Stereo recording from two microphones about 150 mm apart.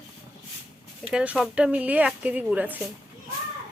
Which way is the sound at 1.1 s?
5° right (ahead or behind).